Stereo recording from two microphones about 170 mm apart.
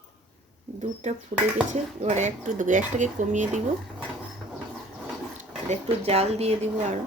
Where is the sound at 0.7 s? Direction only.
45° right (ahead or behind).